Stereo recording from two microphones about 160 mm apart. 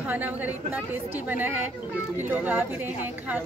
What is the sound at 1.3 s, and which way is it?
Speech, 10° right (ahead or behind).